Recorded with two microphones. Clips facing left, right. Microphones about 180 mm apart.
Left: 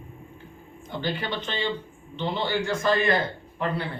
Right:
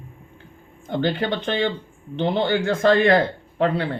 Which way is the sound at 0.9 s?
60° right (ahead or behind).